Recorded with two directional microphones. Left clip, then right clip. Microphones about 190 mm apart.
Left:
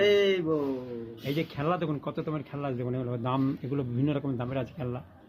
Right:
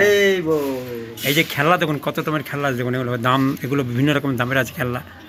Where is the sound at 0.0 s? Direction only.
25° left (ahead or behind).